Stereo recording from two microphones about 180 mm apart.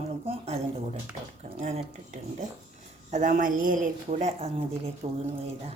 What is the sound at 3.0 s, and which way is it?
A woman's voice, 45° right (ahead or behind).